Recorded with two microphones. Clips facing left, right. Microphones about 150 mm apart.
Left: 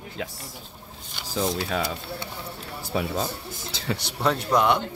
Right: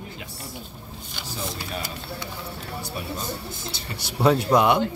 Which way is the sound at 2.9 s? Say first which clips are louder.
Left 9 dB; 90° left.